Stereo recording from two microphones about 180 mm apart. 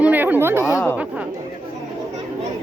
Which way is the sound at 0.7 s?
10° left (ahead or behind).